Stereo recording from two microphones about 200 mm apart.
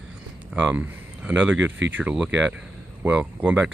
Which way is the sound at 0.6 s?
5° right (ahead or behind).